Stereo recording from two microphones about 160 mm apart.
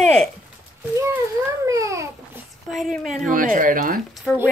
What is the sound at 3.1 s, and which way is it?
Speech, 55° right (ahead or behind).